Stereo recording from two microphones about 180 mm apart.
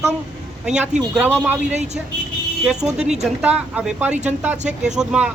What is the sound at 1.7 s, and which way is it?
Speech, 40° right (ahead or behind).